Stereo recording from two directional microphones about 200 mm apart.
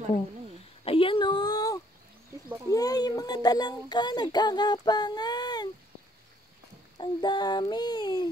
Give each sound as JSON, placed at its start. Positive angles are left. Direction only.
{"t": 0.8, "sound": "a sound", "side_deg": 25}
{"t": 2.7, "sound": "speech", "side_deg": 20}
{"t": 7.0, "sound": "a child's voice", "side_deg": 20}